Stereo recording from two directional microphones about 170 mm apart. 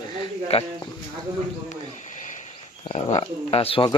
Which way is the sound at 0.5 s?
40° left (ahead or behind).